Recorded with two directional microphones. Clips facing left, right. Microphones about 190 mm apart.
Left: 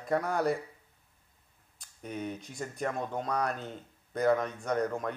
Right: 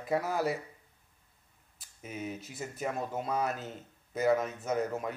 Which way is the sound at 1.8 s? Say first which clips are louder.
Left 2 dB; 5° right (ahead or behind).